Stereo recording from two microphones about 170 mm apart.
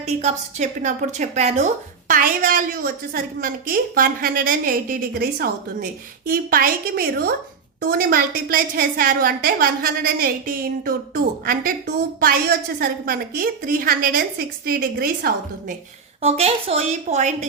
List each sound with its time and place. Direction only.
0.0 s a woman's voice: 40° right (ahead or behind); by 15.7 s 60° right (ahead or behind)
16.2 s a woman's voice: 35° right (ahead or behind)